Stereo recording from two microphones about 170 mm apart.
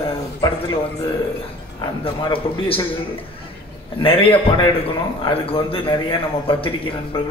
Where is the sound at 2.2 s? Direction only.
30° left (ahead or behind).